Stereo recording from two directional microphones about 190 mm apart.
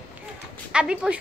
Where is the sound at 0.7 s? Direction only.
5° right (ahead or behind).